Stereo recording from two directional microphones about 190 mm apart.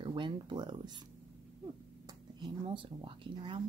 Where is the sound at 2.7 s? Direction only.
25° right (ahead or behind).